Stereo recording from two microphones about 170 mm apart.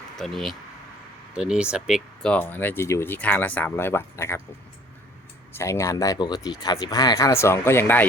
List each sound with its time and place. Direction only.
0.2 s speech: centre (ahead or behind)
2.3 s speech: 10° left (ahead or behind)
5.5 s speech: 15° left (ahead or behind)